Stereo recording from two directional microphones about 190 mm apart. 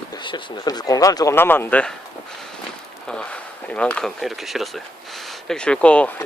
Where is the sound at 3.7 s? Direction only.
5° left (ahead or behind).